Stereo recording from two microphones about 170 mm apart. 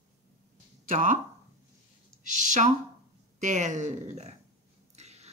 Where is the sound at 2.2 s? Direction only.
45° right (ahead or behind).